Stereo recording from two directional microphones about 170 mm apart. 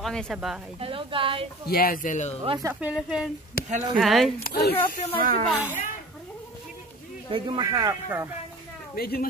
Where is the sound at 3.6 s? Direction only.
60° left (ahead or behind).